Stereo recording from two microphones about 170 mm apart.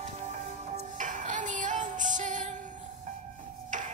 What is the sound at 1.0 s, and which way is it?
Music, 50° right (ahead or behind).